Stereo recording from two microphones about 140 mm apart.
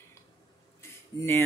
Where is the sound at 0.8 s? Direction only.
20° left (ahead or behind).